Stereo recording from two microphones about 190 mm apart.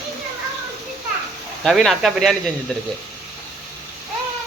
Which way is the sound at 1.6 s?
Centre (ahead or behind).